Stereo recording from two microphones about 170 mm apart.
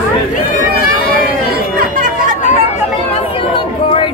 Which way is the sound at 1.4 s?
55° right (ahead or behind).